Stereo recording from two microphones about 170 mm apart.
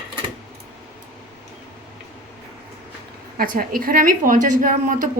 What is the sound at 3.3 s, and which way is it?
A woman's voice, 60° right (ahead or behind).